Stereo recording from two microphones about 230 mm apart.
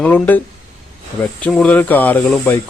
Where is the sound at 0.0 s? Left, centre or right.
Centre.